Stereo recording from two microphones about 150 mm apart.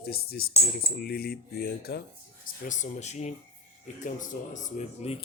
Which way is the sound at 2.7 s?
50° left (ahead or behind).